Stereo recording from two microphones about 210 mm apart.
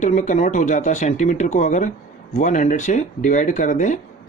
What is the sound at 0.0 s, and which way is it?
Speech, 35° left (ahead or behind).